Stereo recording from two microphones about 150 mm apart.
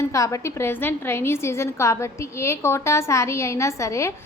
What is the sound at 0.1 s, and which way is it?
A woman's voice, 20° left (ahead or behind).